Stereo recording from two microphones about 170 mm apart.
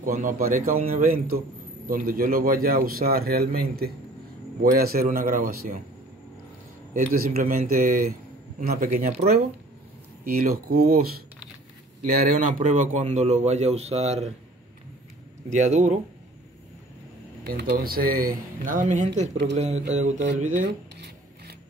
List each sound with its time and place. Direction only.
0.0 s speech: 50° right (ahead or behind)
6.9 s a man's voice: 50° right (ahead or behind)
10.2 s a man's voice: 60° right (ahead or behind); by 14.3 s 40° right (ahead or behind)
15.5 s speech: 45° right (ahead or behind)
17.5 s a man's voice: 65° right (ahead or behind); by 20.2 s 45° right (ahead or behind)